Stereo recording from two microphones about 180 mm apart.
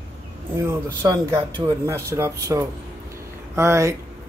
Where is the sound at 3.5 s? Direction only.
15° right (ahead or behind).